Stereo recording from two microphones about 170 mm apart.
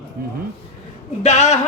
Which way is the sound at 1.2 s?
40° left (ahead or behind).